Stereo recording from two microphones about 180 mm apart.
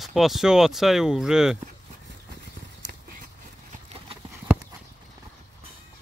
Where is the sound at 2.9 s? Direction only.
55° right (ahead or behind).